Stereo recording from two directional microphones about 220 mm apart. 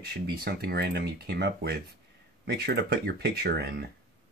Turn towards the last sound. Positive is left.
turn(degrees=-45)  # may be behind; listen again after turning